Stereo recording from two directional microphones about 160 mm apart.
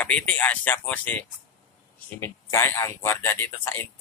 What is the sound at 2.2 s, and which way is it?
Speech, 15° left (ahead or behind).